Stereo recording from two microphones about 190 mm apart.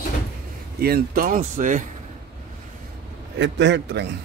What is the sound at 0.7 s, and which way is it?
Speech, 55° right (ahead or behind).